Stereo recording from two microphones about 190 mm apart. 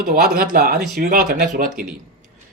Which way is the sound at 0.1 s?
50° right (ahead or behind).